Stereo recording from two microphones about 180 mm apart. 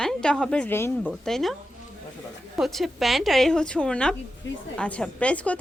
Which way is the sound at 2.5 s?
Centre (ahead or behind).